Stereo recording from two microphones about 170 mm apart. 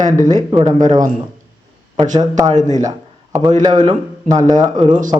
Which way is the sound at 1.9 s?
45° right (ahead or behind).